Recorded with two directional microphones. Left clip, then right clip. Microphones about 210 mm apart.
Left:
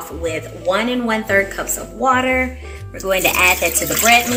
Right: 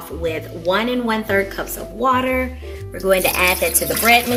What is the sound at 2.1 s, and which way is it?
Speech, 45° right (ahead or behind).